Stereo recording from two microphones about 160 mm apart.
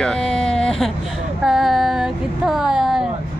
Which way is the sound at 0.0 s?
5° left (ahead or behind).